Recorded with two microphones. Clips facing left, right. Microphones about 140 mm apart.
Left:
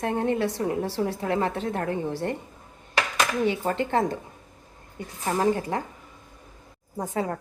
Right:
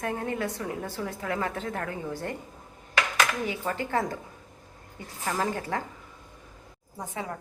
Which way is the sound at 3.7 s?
25° left (ahead or behind).